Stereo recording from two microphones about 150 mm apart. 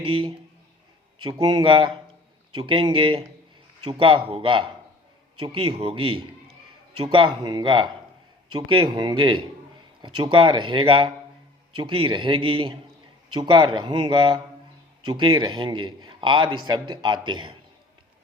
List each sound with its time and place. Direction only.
0.0 s a man's voice: 35° right (ahead or behind)